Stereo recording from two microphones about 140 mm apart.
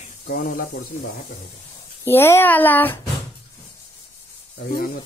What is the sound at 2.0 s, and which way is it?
Speech, 15° left (ahead or behind).